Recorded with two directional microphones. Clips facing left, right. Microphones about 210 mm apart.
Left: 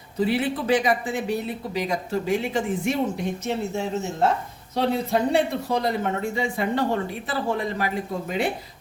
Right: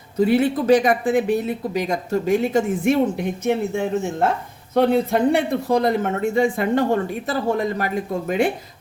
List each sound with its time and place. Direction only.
0.2 s speech: 45° right (ahead or behind)
3.4 s speech: 55° right (ahead or behind)